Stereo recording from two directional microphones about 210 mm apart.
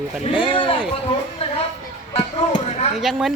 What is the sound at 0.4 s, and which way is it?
Speech, 25° left (ahead or behind).